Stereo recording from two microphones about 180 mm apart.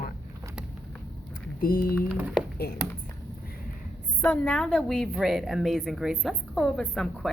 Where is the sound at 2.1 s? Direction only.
5° right (ahead or behind).